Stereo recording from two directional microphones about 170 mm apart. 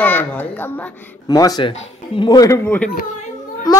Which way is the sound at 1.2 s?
20° left (ahead or behind).